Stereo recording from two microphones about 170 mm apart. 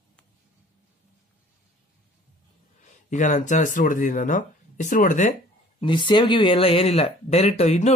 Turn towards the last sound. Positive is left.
turn(degrees=40)  # may be behind; listen again after turning